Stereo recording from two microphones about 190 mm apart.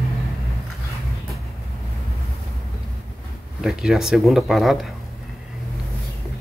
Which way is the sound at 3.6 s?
Centre (ahead or behind).